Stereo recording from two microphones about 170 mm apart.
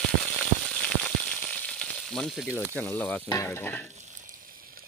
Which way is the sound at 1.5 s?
5° left (ahead or behind).